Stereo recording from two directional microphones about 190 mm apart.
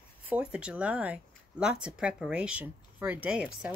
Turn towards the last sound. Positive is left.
turn(degrees=-5)  # may be behind; listen again after turning